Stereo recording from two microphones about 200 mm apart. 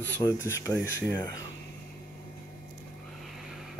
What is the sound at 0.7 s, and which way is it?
Speech, 10° right (ahead or behind).